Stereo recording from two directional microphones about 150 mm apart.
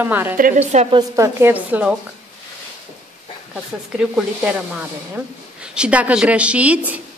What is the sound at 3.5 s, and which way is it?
Speech, 5° right (ahead or behind).